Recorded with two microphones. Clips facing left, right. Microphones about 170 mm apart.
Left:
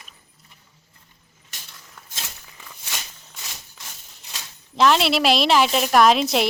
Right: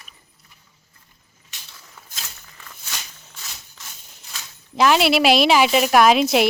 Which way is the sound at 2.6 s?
10° left (ahead or behind).